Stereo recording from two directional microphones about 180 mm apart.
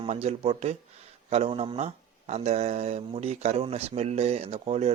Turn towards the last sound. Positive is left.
turn(degrees=-35)  # may be behind; listen again after turning